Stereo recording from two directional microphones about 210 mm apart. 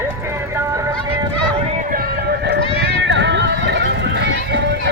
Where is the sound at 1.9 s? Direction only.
45° right (ahead or behind).